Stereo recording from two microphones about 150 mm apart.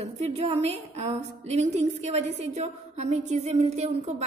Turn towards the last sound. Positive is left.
turn(degrees=-45)  # may be behind; listen again after turning